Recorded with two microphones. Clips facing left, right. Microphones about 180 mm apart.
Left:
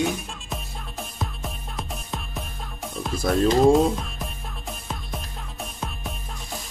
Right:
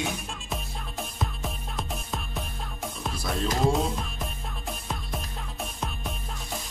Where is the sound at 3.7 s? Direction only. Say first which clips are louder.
Left 8 dB; centre (ahead or behind).